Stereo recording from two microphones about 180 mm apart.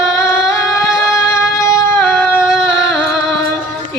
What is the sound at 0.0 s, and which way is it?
Music, 15° left (ahead or behind).